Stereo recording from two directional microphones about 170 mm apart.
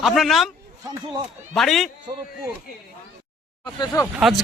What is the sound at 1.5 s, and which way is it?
Speech, centre (ahead or behind).